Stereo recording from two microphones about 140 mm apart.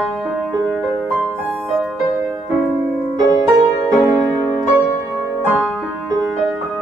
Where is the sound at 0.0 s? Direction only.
5° right (ahead or behind).